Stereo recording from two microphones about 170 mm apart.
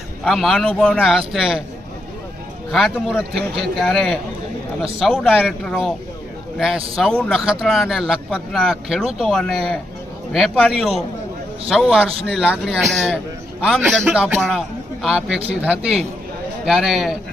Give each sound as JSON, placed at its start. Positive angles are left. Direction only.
{"t": 0.3, "sound": "speech", "side_deg": 0}
{"t": 2.7, "sound": "speech", "side_deg": 0}